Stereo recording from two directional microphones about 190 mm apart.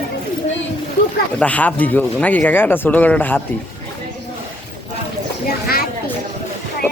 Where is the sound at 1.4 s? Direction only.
5° left (ahead or behind).